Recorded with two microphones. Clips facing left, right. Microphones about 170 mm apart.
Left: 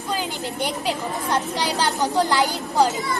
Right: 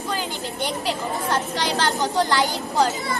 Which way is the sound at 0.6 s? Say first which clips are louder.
Even; 10° left (ahead or behind).